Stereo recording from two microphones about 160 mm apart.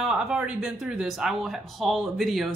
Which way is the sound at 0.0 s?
5° right (ahead or behind).